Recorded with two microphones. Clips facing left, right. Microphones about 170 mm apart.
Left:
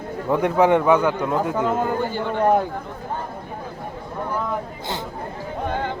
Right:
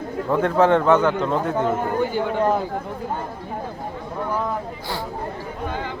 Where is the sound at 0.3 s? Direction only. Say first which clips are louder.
Even; 15° left (ahead or behind).